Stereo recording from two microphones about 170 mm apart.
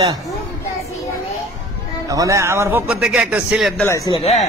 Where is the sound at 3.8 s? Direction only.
20° left (ahead or behind).